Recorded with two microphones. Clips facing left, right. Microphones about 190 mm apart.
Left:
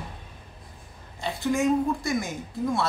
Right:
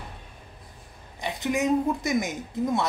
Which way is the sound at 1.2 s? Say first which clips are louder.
Left 2 dB; 20° right (ahead or behind).